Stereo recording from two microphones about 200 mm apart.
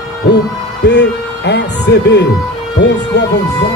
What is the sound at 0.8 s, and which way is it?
Speech, 60° left (ahead or behind).